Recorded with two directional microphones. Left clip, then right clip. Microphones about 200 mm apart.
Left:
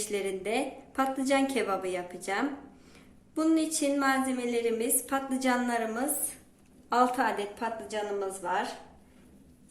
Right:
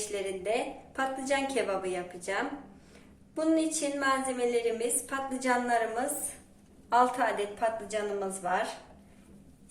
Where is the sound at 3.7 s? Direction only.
50° left (ahead or behind).